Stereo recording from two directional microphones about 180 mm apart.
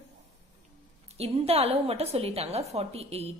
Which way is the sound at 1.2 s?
35° right (ahead or behind).